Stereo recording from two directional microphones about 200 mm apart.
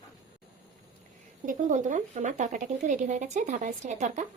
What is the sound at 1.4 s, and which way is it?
Speech, 40° right (ahead or behind).